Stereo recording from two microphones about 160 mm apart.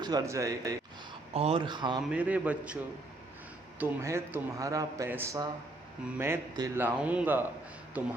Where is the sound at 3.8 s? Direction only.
15° right (ahead or behind).